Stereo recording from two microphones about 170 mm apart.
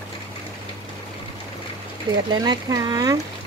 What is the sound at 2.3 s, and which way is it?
Speech, 25° right (ahead or behind).